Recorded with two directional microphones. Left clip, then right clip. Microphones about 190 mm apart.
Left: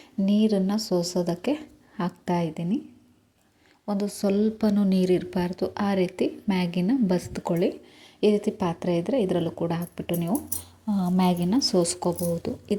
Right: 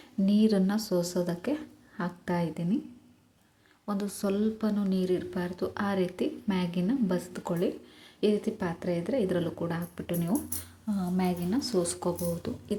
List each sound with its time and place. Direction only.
0.3 s a woman's voice: 10° left (ahead or behind)
3.8 s a woman's voice: 15° left (ahead or behind)
10.9 s speech: 30° left (ahead or behind)